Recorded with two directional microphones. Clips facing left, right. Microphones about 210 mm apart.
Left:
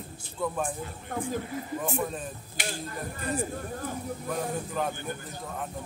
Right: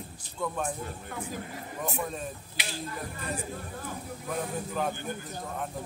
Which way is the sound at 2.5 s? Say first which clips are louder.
Left 3 dB; 50° left (ahead or behind).